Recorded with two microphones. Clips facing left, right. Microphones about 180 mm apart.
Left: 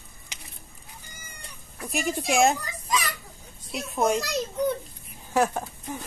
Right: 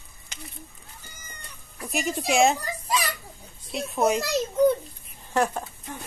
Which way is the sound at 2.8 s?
35° right (ahead or behind).